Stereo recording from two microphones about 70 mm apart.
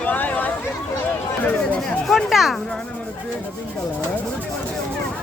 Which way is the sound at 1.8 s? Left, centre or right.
Centre.